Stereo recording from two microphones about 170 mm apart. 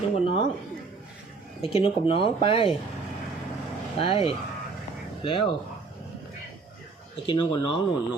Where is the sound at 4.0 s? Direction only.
35° left (ahead or behind).